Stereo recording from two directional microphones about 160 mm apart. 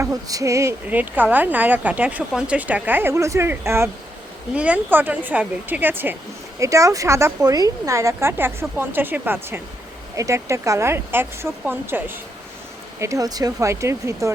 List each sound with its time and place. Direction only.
0.0 s speech: 20° right (ahead or behind)